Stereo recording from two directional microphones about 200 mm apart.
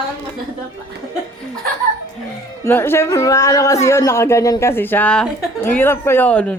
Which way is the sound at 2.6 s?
10° left (ahead or behind).